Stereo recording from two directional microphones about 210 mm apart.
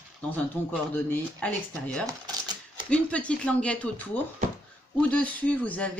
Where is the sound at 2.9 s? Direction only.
5° left (ahead or behind).